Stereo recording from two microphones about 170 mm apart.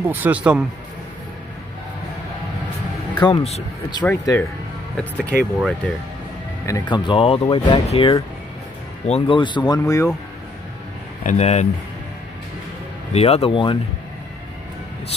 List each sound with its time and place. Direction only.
0.1 s speech: 10° right (ahead or behind)
3.2 s speech: 35° left (ahead or behind)
4.0 s speech: 10° left (ahead or behind)
6.6 s speech: 20° left (ahead or behind); by 9.4 s 40° left (ahead or behind)
9.4 s speech: 25° left (ahead or behind)
11.2 s speech: 40° left (ahead or behind)
13.1 s speech: 35° left (ahead or behind)